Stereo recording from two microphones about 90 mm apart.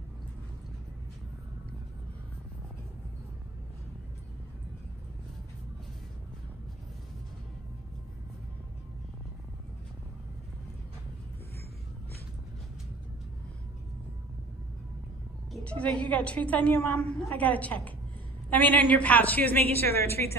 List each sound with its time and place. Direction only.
15.6 s a woman's voice: 15° left (ahead or behind)